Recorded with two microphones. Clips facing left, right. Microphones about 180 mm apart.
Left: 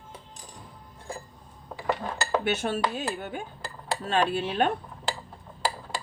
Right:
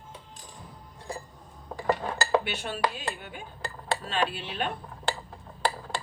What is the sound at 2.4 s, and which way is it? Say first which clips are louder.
Speech: left 4 dB; 45° left (ahead or behind).